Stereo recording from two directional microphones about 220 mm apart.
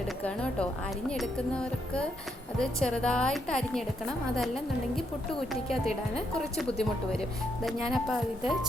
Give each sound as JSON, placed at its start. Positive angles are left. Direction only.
{"t": 0.2, "sound": "a woman's voice", "side_deg": 5}
{"t": 6.1, "sound": "a woman's voice", "side_deg": 0}